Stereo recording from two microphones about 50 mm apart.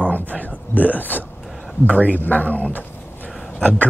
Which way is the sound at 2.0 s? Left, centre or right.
Left.